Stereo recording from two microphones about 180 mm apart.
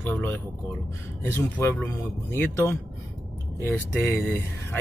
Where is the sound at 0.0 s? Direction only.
10° left (ahead or behind).